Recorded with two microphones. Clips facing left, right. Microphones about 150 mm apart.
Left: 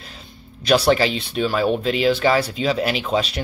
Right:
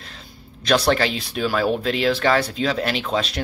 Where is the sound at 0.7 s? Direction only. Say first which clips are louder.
Left 2 dB; 5° left (ahead or behind).